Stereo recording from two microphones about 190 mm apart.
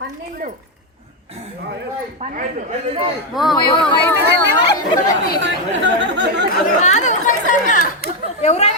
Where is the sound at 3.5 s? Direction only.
25° left (ahead or behind).